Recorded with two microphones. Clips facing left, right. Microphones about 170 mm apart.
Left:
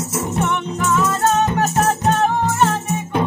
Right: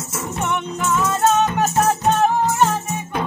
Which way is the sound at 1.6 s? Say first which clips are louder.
Even; centre (ahead or behind).